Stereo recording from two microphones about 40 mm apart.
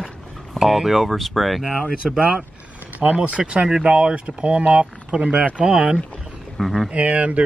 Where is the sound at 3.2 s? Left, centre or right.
Right.